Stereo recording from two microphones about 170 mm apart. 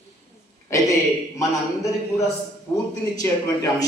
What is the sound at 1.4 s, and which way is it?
A man's voice, 20° left (ahead or behind).